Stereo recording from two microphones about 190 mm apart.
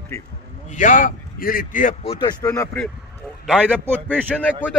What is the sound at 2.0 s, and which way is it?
Speech, 25° left (ahead or behind).